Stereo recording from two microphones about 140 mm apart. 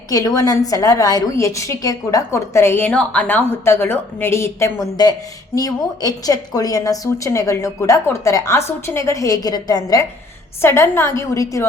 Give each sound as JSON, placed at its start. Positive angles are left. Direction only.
{"t": 0.1, "sound": "a woman's voice", "side_deg": 25}